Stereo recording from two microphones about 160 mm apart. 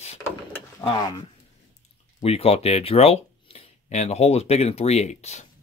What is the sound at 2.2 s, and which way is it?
Speech, 40° left (ahead or behind).